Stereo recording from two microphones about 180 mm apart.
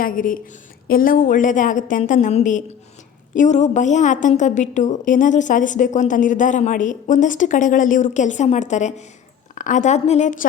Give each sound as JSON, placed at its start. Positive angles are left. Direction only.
{"t": 0.0, "sound": "a woman's voice", "side_deg": 50}